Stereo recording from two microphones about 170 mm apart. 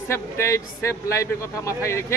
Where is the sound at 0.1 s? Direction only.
15° left (ahead or behind).